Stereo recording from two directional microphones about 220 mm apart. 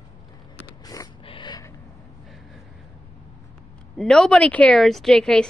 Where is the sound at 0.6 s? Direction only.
15° left (ahead or behind).